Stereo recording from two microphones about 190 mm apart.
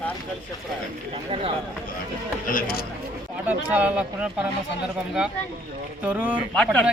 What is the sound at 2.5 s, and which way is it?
Speech, 50° left (ahead or behind).